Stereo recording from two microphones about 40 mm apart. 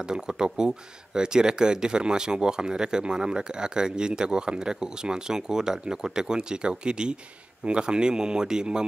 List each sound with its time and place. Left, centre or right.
0.0 s speech: centre